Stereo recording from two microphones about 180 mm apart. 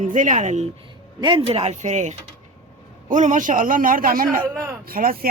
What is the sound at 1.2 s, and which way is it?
A man's voice, 25° right (ahead or behind).